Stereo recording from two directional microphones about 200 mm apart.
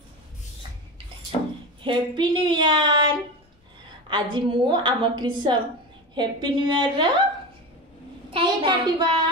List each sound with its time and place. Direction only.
1.9 s a woman's voice: 25° right (ahead or behind)
4.1 s a woman's voice: 25° right (ahead or behind)
8.3 s a child's voice: 25° right (ahead or behind)